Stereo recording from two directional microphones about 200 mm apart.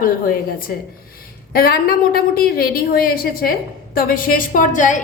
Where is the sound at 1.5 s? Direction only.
50° left (ahead or behind).